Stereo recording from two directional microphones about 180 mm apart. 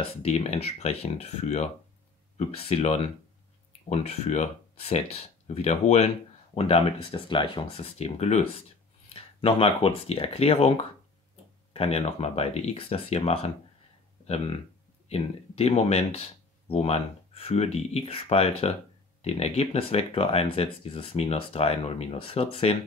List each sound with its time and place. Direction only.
0.1 s speech: 35° left (ahead or behind)